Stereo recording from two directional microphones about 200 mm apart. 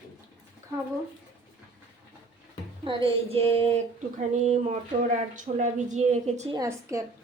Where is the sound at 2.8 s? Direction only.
25° right (ahead or behind).